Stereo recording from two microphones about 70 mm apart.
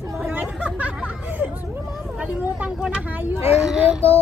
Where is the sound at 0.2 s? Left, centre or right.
Right.